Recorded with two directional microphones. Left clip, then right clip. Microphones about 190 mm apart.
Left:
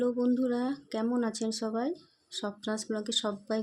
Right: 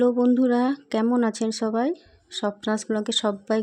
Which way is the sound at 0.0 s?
40° right (ahead or behind).